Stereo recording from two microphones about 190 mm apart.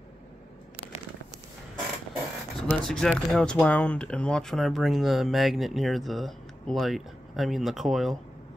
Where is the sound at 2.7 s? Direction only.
5° left (ahead or behind).